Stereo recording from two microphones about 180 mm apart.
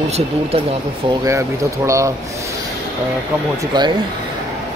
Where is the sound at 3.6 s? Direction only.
25° right (ahead or behind).